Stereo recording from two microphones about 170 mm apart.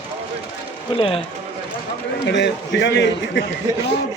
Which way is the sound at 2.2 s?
90° left.